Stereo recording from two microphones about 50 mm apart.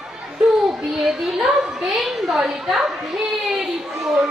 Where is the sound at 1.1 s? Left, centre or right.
Centre.